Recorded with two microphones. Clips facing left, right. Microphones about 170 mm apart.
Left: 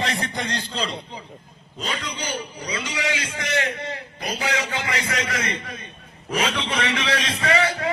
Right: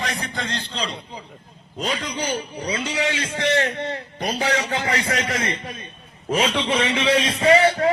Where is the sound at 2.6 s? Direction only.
30° right (ahead or behind).